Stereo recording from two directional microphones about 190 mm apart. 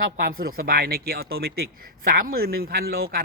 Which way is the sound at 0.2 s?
50° right (ahead or behind).